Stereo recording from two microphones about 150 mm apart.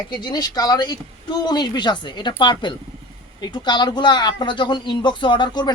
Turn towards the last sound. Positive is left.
turn(degrees=30)  # may be behind; listen again after turning